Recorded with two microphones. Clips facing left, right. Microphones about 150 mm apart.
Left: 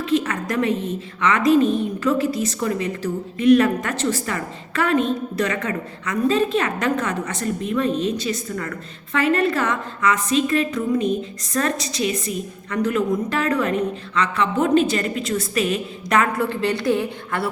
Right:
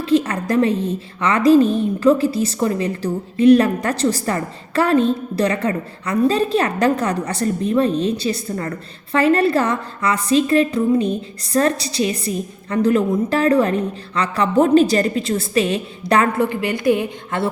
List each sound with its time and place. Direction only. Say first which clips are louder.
0.0 s a woman's voice: right 4 dB; 30° right (ahead or behind)
16.4 s a woman's voice: right 2 dB; 15° right (ahead or behind)